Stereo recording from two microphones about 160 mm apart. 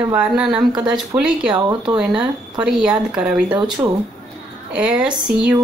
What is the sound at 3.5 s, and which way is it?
Speech, 30° right (ahead or behind).